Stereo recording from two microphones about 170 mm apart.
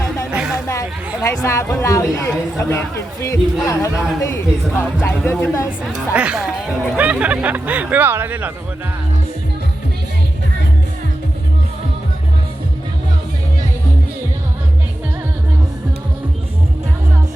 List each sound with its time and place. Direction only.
0.3 s music: 5° right (ahead or behind)
0.7 s speech: 15° left (ahead or behind)
6.1 s speech: 5° right (ahead or behind)